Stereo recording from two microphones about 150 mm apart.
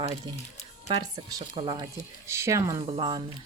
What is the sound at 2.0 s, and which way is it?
Speech, 20° right (ahead or behind).